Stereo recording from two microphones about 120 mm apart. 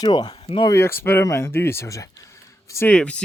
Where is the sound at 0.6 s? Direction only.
25° left (ahead or behind).